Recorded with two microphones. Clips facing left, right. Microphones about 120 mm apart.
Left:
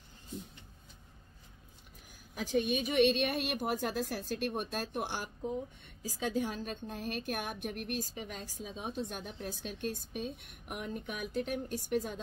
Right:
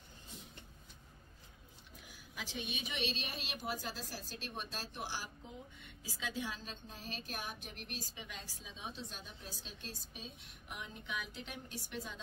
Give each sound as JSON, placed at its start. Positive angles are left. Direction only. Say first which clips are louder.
{"t": 2.0, "sound": "a woman's voice", "louder": "left 8 dB", "side_deg": 45}